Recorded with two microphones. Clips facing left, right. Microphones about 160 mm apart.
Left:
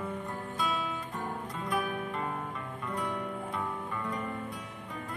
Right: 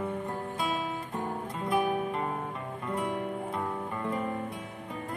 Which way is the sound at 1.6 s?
25° right (ahead or behind).